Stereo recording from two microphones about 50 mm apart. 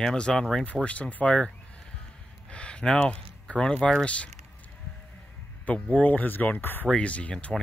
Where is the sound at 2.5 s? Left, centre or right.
Left.